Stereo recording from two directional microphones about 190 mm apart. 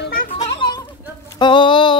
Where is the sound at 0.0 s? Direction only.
50° left (ahead or behind).